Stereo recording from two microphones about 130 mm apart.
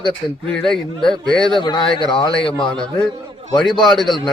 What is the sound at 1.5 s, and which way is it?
A man's voice, 35° left (ahead or behind).